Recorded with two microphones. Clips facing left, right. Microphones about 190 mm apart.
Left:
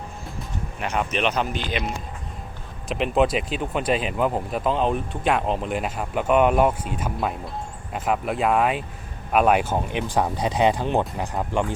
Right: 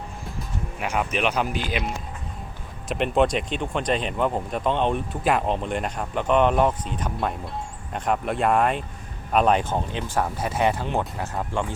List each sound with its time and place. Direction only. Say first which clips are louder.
0.8 s speech: even; 5° right (ahead or behind)
2.9 s speech: even; centre (ahead or behind)